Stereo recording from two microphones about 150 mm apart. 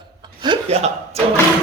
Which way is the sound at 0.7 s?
45° right (ahead or behind).